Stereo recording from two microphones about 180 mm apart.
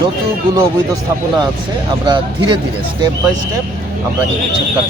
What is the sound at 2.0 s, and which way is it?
Speech, 25° right (ahead or behind).